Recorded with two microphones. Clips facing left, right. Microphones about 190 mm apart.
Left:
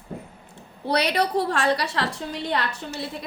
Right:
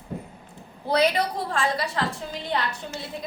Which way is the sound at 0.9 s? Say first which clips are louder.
Even; 70° left (ahead or behind).